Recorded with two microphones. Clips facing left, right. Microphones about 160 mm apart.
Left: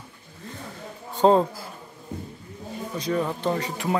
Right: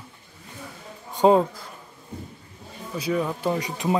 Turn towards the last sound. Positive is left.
turn(degrees=-20)  # may be behind; listen again after turning